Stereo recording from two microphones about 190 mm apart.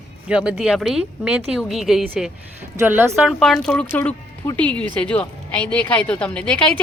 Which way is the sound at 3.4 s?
Centre (ahead or behind).